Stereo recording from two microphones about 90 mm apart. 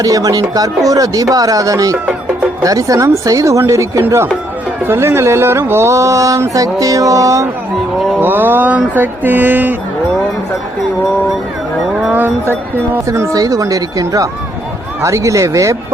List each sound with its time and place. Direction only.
0.0 s speech: 45° right (ahead or behind)
8.2 s speech: 25° right (ahead or behind)
12.0 s speech: 20° right (ahead or behind)
13.1 s speech: 35° right (ahead or behind)